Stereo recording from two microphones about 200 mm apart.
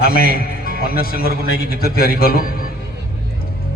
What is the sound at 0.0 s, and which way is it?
A man's voice, 50° left (ahead or behind).